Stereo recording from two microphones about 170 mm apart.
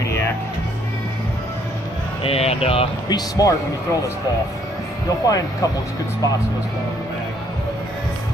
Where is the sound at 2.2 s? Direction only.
35° left (ahead or behind).